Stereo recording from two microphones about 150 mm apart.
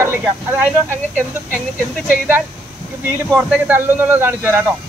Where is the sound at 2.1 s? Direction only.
15° right (ahead or behind).